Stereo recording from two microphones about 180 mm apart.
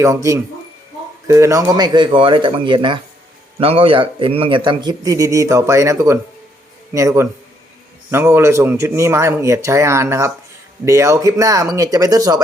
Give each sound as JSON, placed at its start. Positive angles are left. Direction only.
{"t": 0.0, "sound": "a man's voice", "side_deg": -15}